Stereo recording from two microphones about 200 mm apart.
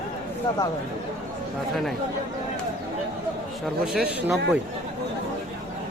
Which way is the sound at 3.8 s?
5° right (ahead or behind).